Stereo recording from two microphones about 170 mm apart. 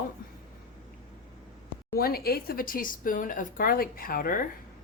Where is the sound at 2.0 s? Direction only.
60° left (ahead or behind).